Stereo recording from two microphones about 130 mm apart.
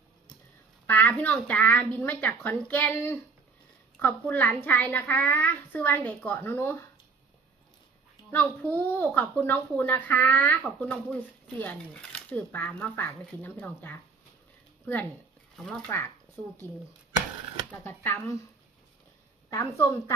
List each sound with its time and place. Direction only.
0.9 s a child's voice: 15° left (ahead or behind)
8.3 s a child's voice: 15° left (ahead or behind)
17.7 s a child's voice: 15° left (ahead or behind)
19.5 s a woman's voice: 20° left (ahead or behind)